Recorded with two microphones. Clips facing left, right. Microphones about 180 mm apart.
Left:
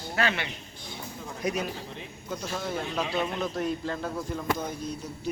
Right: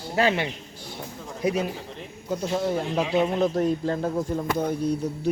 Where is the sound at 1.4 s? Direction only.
30° right (ahead or behind).